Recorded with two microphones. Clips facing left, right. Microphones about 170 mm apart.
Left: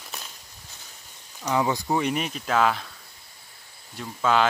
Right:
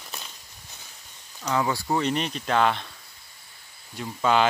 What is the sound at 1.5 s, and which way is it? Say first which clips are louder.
Speech: left 1 dB; 15° left (ahead or behind).